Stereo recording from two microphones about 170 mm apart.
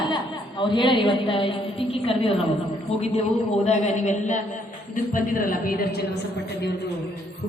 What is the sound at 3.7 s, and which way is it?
A man's voice, 45° left (ahead or behind).